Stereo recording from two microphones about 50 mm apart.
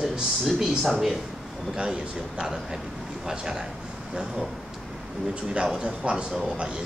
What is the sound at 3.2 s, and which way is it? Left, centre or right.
Speech, centre.